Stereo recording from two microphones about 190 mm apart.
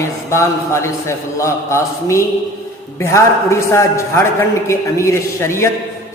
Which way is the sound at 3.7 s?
15° left (ahead or behind).